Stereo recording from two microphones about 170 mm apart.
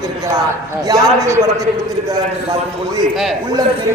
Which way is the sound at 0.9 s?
20° right (ahead or behind).